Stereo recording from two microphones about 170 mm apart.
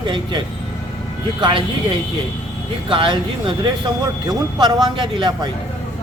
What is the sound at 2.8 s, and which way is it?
Speech, 30° right (ahead or behind).